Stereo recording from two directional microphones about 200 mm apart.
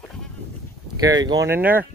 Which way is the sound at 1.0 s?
20° right (ahead or behind).